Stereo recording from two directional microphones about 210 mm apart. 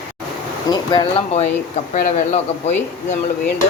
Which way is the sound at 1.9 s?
35° left (ahead or behind).